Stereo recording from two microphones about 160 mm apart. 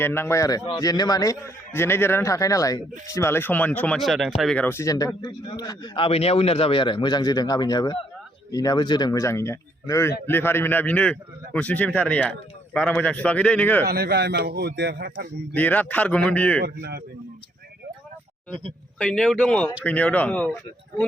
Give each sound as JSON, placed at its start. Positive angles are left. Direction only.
{"t": 0.0, "sound": "a man's voice", "side_deg": 15}
{"t": 13.8, "sound": "speech", "side_deg": -85}
{"t": 15.5, "sound": "speech", "side_deg": 10}
{"t": 16.6, "sound": "speech", "side_deg": -90}
{"t": 18.9, "sound": "speech", "side_deg": 5}